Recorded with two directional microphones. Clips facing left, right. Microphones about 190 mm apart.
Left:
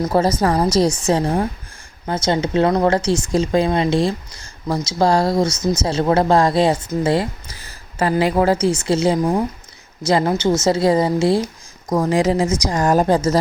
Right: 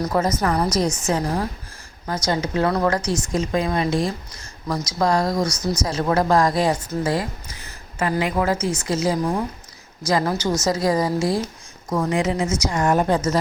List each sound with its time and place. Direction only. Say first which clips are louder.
0.0 s speech: left 4 dB; 30° left (ahead or behind)
7.0 s a sound: left 7 dB; 25° left (ahead or behind)
8.2 s a woman's voice: left 7 dB; 30° left (ahead or behind)